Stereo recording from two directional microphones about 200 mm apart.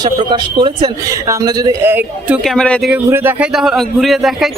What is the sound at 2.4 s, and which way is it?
Speech, 5° left (ahead or behind).